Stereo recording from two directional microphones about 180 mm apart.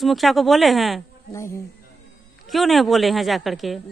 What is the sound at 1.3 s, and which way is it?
Speech, 15° left (ahead or behind).